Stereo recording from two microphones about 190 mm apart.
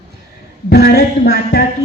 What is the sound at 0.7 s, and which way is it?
Speech, 60° left (ahead or behind).